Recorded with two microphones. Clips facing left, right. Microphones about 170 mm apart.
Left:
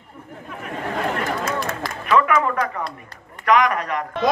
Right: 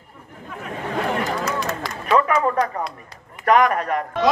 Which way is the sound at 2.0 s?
35° right (ahead or behind).